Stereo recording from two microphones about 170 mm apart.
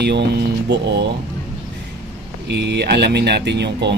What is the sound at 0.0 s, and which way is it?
Speech, 85° right.